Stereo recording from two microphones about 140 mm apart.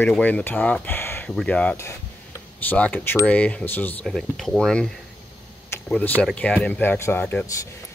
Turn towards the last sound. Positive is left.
turn(degrees=15)  # may be behind; listen again after turning